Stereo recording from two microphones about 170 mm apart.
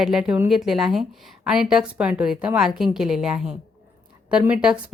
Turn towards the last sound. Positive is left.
turn(degrees=-5)  # may be behind; listen again after turning